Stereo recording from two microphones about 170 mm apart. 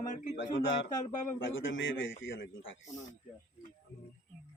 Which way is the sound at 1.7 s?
90° left.